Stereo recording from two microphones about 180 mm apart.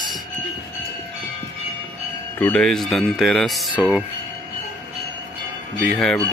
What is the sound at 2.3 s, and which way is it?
Speech, 10° left (ahead or behind).